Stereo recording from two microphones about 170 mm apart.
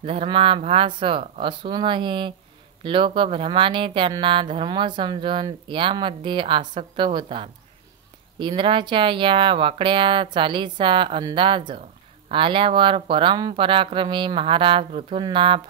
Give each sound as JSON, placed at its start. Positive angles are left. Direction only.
{"t": 0.0, "sound": "speech", "side_deg": -35}